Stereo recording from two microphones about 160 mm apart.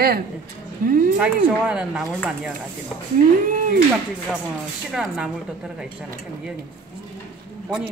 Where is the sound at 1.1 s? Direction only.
5° right (ahead or behind).